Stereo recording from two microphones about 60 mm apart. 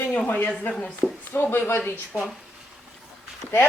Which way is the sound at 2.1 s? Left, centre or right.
Right.